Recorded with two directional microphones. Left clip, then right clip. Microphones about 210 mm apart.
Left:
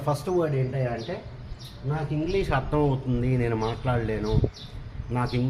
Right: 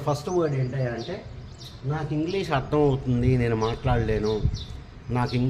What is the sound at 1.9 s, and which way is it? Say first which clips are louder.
Speech: even; 30° right (ahead or behind).